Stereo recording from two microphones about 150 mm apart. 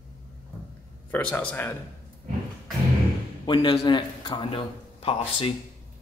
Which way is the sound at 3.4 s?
30° left (ahead or behind).